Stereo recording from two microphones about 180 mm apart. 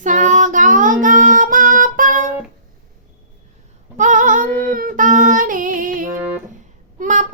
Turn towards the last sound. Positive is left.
turn(degrees=-45)  # may be behind; listen again after turning